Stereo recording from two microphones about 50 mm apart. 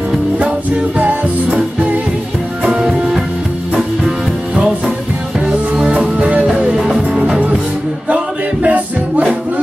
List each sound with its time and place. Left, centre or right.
0.9 s music: right
2.6 s music: centre
4.6 s music: centre
6.1 s music: right
6.8 s music: centre
8.6 s music: right